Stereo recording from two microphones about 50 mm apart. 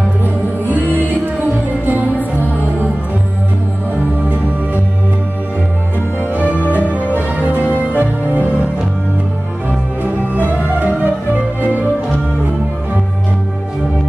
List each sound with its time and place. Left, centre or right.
0.2 s music: right
6.9 s music: right
7.6 s music: left
8.0 s music: right
10.3 s music: right